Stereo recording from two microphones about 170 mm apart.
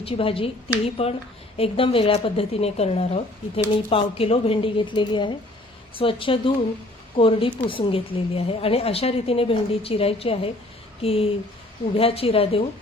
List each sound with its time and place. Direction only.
0.0 s speech: 35° left (ahead or behind)